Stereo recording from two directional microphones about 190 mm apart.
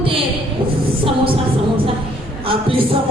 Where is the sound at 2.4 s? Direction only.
30° right (ahead or behind).